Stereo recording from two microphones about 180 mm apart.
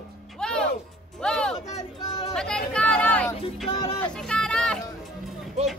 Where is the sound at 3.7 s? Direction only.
30° left (ahead or behind).